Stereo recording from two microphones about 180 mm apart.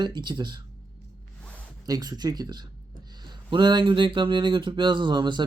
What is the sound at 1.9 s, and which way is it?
Speech, 20° right (ahead or behind).